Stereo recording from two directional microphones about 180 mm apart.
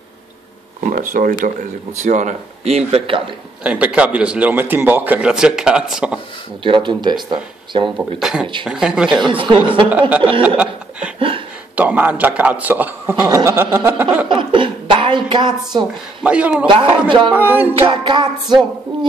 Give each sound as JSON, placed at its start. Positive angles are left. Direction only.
{"t": 0.8, "sound": "speech", "side_deg": -50}
{"t": 3.6, "sound": "a man's voice", "side_deg": -5}
{"t": 6.6, "sound": "music", "side_deg": -25}
{"t": 7.8, "sound": "speech", "side_deg": 0}
{"t": 9.2, "sound": "music", "side_deg": -30}
{"t": 9.8, "sound": "a man's voice", "side_deg": -10}
{"t": 10.4, "sound": "chuckle", "side_deg": -5}
{"t": 11.1, "sound": "a sound", "side_deg": -30}
{"t": 11.7, "sound": "a man's voice", "side_deg": -10}
{"t": 14.3, "sound": "a sound", "side_deg": -25}
{"t": 16.2, "sound": "a man's voice", "side_deg": -5}
{"t": 16.6, "sound": "music", "side_deg": -30}
{"t": 17.3, "sound": "a man's voice", "side_deg": -10}
{"t": 17.7, "sound": "music", "side_deg": -30}